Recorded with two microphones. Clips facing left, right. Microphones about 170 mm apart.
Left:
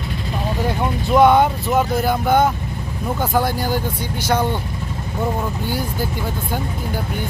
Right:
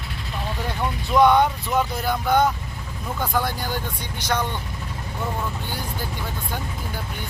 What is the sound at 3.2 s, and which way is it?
Speech, 25° left (ahead or behind).